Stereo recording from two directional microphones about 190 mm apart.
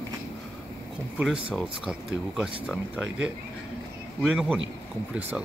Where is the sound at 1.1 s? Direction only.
Centre (ahead or behind).